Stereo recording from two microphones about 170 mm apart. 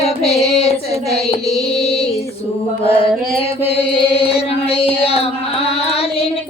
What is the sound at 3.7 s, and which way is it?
Female singing, 35° left (ahead or behind).